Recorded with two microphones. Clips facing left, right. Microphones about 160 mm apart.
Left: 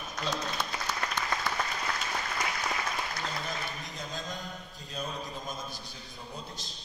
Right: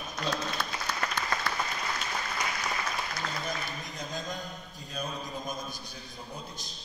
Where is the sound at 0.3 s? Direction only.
20° left (ahead or behind).